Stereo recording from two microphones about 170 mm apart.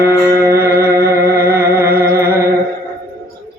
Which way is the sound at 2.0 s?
15° right (ahead or behind).